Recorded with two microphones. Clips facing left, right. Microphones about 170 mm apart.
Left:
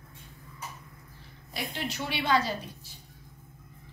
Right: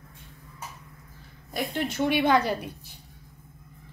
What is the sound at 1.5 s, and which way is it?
A woman's voice, 50° right (ahead or behind).